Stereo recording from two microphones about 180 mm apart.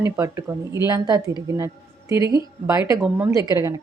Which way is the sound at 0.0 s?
15° right (ahead or behind).